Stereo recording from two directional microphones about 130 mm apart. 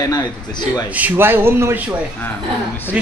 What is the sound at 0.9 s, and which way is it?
Speech, 15° right (ahead or behind).